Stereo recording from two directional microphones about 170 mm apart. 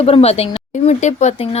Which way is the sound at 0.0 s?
35° left (ahead or behind).